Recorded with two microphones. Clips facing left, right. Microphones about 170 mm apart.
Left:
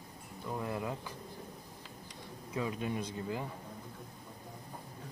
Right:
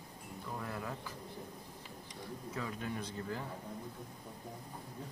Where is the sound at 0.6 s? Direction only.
20° left (ahead or behind).